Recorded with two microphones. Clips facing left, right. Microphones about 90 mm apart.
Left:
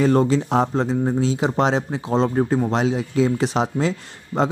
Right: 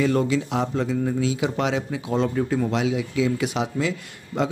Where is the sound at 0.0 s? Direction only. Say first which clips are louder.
Left 4 dB; 35° left (ahead or behind).